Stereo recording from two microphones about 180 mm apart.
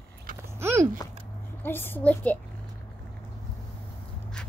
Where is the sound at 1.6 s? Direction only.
10° left (ahead or behind).